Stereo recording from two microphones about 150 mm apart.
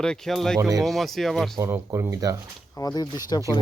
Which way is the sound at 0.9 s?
Centre (ahead or behind).